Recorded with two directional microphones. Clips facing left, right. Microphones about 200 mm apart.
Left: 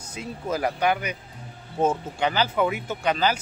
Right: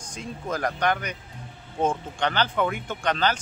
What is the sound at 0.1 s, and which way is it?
Speech, 5° left (ahead or behind).